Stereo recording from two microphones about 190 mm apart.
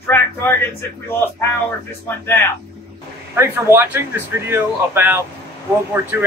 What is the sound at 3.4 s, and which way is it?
Speech, 10° right (ahead or behind).